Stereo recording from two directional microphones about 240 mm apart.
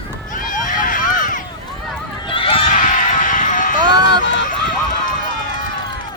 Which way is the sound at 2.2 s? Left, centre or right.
Left.